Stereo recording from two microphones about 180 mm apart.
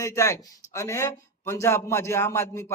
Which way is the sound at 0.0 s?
15° left (ahead or behind).